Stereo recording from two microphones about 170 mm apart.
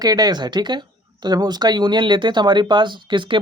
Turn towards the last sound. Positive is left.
turn(degrees=-30)  # may be behind; listen again after turning